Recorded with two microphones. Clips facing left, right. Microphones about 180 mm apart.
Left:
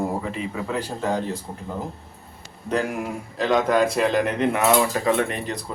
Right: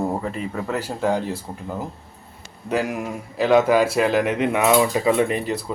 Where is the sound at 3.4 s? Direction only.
5° right (ahead or behind).